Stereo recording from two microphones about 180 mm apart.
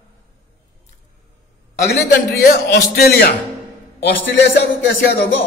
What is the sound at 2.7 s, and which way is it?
Speech, 60° left (ahead or behind).